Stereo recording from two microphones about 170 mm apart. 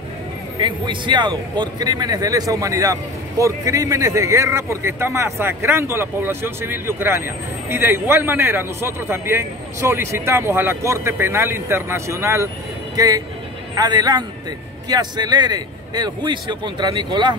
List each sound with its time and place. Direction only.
0.6 s a man's voice: 30° right (ahead or behind)